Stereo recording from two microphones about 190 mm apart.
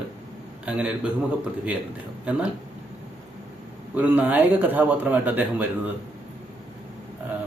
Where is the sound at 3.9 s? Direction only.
10° right (ahead or behind).